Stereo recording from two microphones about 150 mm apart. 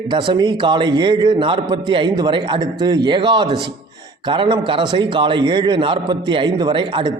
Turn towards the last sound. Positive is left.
turn(degrees=-35)  # may be behind; listen again after turning